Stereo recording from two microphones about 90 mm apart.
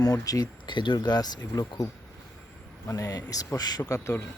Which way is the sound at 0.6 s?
60° left (ahead or behind).